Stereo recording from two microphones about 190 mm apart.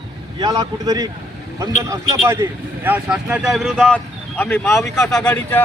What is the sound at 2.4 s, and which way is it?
Speech, 20° right (ahead or behind).